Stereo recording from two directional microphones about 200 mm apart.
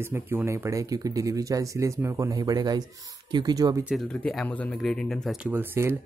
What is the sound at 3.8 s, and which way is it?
Speech, centre (ahead or behind).